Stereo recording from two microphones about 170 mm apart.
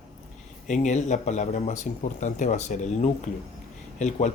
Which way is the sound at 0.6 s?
45° left (ahead or behind).